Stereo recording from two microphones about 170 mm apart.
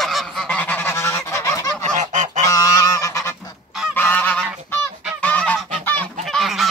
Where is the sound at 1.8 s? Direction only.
45° right (ahead or behind).